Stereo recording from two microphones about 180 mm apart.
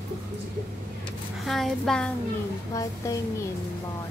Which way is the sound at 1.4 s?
Centre (ahead or behind).